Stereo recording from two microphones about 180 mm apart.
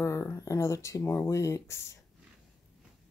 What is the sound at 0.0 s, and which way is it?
Speech, 15° left (ahead or behind).